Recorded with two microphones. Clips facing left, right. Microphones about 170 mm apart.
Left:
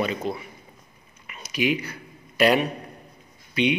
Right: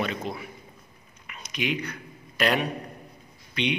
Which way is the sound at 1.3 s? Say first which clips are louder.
Left 5 dB; 5° left (ahead or behind).